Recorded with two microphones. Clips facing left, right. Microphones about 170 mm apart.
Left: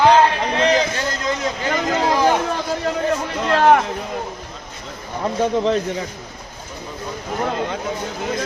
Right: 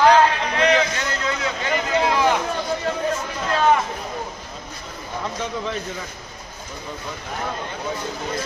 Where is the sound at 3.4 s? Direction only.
65° left (ahead or behind).